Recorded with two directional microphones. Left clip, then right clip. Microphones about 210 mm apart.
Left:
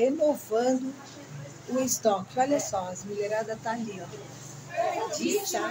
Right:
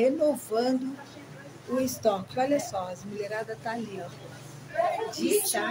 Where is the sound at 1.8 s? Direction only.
5° left (ahead or behind).